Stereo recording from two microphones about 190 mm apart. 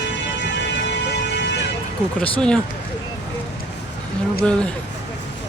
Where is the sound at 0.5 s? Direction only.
65° left (ahead or behind).